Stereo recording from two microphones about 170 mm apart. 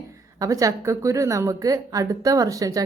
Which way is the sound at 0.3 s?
20° right (ahead or behind).